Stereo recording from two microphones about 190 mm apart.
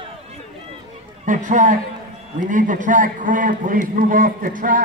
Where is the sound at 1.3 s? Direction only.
40° right (ahead or behind).